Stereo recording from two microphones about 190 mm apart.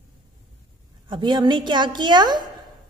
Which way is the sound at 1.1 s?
25° right (ahead or behind).